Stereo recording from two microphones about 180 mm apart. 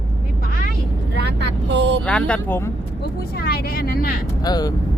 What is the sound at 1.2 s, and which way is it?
Vehicle, 70° right (ahead or behind).